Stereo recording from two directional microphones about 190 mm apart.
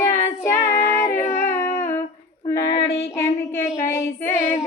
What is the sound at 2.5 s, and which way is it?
Child singing, 20° left (ahead or behind).